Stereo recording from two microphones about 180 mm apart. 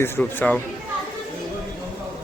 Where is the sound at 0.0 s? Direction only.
10° left (ahead or behind).